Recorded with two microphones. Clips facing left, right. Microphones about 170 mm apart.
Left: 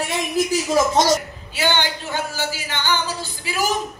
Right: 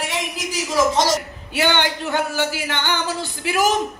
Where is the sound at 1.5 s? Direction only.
65° right (ahead or behind).